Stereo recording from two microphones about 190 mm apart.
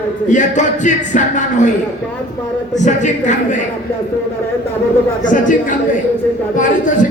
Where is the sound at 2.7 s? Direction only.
40° left (ahead or behind).